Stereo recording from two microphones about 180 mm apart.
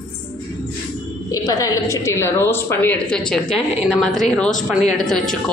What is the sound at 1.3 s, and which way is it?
A woman's voice, 20° left (ahead or behind).